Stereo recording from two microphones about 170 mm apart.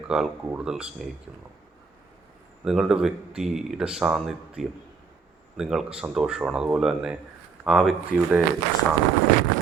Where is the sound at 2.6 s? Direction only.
5° right (ahead or behind).